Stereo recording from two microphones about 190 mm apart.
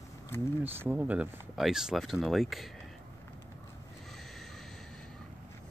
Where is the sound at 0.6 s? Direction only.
10° right (ahead or behind).